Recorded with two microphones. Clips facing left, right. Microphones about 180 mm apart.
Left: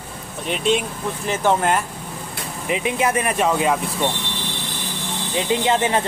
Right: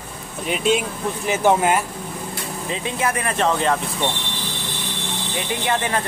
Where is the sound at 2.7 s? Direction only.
15° left (ahead or behind).